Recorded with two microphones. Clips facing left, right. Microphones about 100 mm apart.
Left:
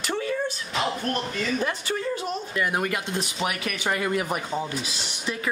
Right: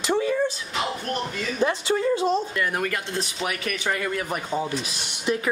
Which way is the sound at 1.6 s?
20° right (ahead or behind).